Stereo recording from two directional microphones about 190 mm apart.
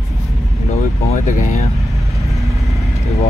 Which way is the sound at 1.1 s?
35° left (ahead or behind).